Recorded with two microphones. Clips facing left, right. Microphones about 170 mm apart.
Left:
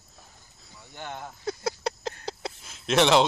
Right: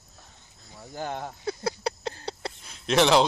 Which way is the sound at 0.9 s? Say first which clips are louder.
Right 5 dB; 35° right (ahead or behind).